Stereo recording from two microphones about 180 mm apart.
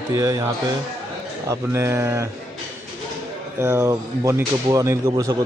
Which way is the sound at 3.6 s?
15° right (ahead or behind).